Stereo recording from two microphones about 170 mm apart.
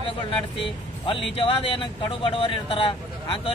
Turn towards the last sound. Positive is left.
turn(degrees=30)  # may be behind; listen again after turning